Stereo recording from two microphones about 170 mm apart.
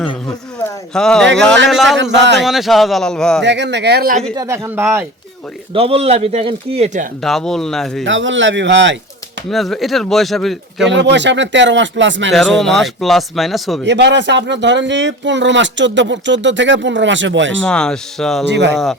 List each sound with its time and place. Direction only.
0.6 s a sound: 5° left (ahead or behind)
1.4 s speech: 5° left (ahead or behind)
3.4 s speech: 90° right; by 4.2 s 65° right (ahead or behind)
4.4 s speech: 15° right (ahead or behind)
5.7 s a man's voice: 35° right (ahead or behind)
7.2 s speech: centre (ahead or behind)
8.0 s speech: 90° right
9.5 s speech: centre (ahead or behind)
10.8 s speech: 90° right
12.3 s speech: centre (ahead or behind)
13.8 s speech: 90° right
17.6 s speech: 5° left (ahead or behind)
18.4 s speech: 90° right